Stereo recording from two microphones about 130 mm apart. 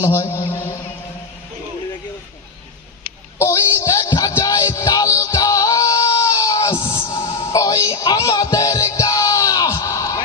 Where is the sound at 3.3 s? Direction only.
20° left (ahead or behind).